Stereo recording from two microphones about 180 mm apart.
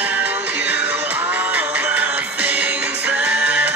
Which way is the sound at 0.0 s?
10° right (ahead or behind).